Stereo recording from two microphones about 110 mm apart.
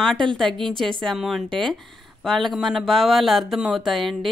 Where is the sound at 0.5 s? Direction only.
50° right (ahead or behind).